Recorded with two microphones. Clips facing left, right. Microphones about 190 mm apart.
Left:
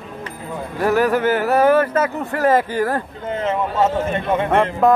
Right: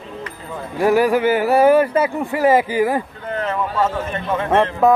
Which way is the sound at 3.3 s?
25° left (ahead or behind).